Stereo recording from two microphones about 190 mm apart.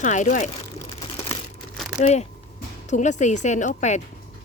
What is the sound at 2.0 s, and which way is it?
Speech, 35° left (ahead or behind).